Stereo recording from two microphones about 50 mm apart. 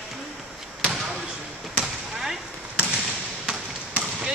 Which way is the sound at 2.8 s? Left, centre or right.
Right.